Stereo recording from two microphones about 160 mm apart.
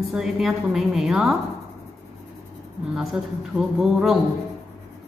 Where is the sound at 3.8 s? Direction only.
5° right (ahead or behind).